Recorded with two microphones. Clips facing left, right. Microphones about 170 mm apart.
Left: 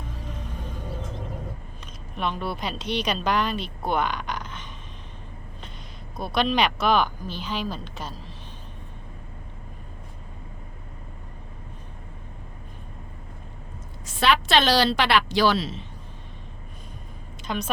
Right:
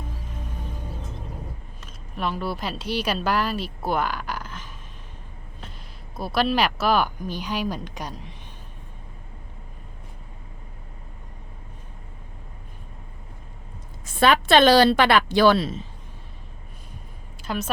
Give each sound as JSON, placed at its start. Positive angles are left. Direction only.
{"t": 2.1, "sound": "speech", "side_deg": 0}
{"t": 6.1, "sound": "speech", "side_deg": -5}
{"t": 14.2, "sound": "a woman's voice", "side_deg": -50}
{"t": 17.4, "sound": "a woman's voice", "side_deg": -5}